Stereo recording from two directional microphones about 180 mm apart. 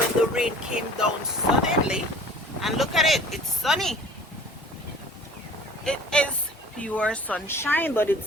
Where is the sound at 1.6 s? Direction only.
5° right (ahead or behind).